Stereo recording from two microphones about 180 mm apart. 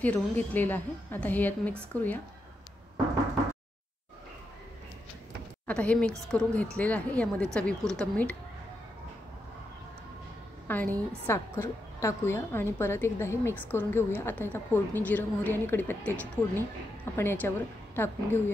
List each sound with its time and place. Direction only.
0.0 s a woman's voice: 10° left (ahead or behind)
5.7 s a woman's voice: 5° left (ahead or behind)
10.7 s a woman's voice: 10° left (ahead or behind)